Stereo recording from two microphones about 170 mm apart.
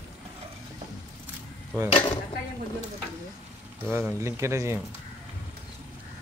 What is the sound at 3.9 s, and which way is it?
Speech, 15° right (ahead or behind).